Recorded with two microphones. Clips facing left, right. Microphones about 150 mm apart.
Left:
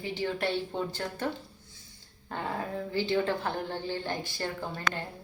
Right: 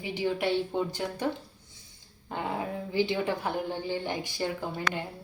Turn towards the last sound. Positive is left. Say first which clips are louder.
# right 2 dB
turn(degrees=-15)  # may be behind; listen again after turning